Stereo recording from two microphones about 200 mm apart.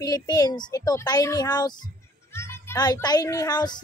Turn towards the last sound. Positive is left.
turn(degrees=20)  # may be behind; listen again after turning